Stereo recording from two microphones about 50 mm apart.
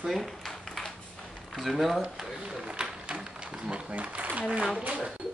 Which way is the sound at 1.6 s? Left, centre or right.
Centre.